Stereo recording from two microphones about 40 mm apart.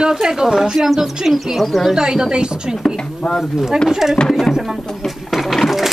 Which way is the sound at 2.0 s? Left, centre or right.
Centre.